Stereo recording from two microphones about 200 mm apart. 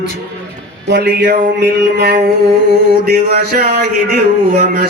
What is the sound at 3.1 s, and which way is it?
Speech, 50° right (ahead or behind).